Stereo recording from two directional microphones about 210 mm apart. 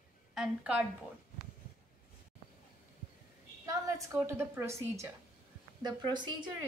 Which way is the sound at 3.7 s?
15° right (ahead or behind).